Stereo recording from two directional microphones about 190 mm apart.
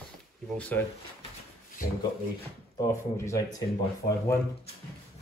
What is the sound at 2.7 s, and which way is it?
Speech, 15° left (ahead or behind).